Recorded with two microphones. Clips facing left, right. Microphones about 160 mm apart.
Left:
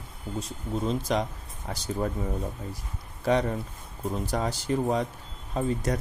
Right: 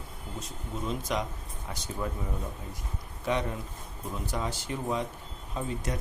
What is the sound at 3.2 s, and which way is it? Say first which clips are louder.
Speech: left 5 dB; 35° left (ahead or behind).